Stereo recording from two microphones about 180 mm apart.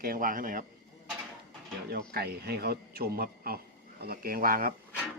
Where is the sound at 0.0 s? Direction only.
50° right (ahead or behind).